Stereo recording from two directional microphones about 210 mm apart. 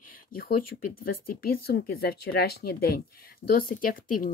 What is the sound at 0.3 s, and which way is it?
Speech, 45° left (ahead or behind).